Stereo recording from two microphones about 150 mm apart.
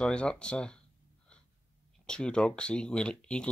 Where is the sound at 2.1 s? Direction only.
5° left (ahead or behind).